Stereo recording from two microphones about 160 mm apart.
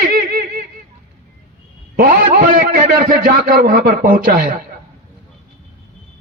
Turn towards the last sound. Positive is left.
turn(degrees=-75)  # may be behind; listen again after turning